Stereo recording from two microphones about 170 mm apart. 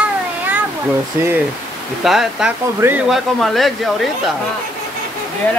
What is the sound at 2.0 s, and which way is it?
Speech, centre (ahead or behind).